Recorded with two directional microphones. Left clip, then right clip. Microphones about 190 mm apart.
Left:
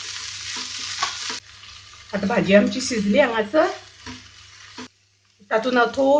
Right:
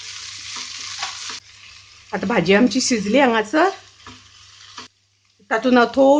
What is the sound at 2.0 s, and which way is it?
Speech, 45° right (ahead or behind).